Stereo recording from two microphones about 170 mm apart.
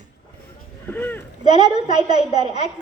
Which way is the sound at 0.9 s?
10° left (ahead or behind).